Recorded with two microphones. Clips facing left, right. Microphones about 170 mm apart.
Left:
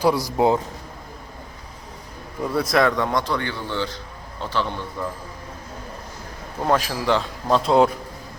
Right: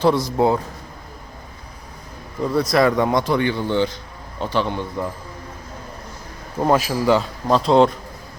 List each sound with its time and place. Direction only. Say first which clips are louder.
0.3 s a man's voice: right 1 dB; 15° left (ahead or behind)
2.4 s a man's voice: right 3 dB; 5° left (ahead or behind)
2.7 s a man's voice: right 3 dB; 5° right (ahead or behind)
6.6 s a man's voice: right 4 dB; 5° right (ahead or behind)